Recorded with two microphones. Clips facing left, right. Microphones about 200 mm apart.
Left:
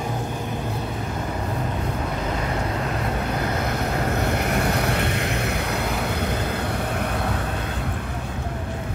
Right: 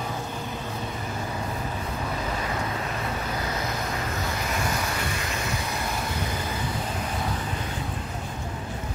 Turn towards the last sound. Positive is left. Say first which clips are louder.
# left 4 dB
turn(degrees=65)  # may be behind; listen again after turning